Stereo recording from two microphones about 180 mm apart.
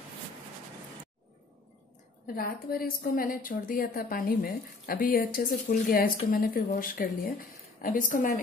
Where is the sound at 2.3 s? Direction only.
55° left (ahead or behind).